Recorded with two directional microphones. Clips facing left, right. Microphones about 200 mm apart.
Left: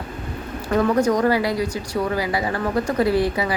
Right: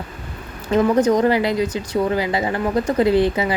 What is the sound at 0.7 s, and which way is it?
Speech, 20° right (ahead or behind).